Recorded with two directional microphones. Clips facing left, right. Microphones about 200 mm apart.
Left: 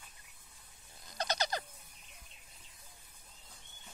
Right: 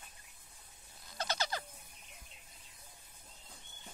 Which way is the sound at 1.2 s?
15° left (ahead or behind).